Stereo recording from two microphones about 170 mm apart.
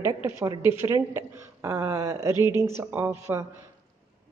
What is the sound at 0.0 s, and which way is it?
A woman's voice, 15° right (ahead or behind).